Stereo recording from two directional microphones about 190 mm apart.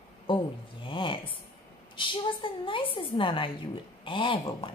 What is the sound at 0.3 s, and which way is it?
Speech, 25° left (ahead or behind).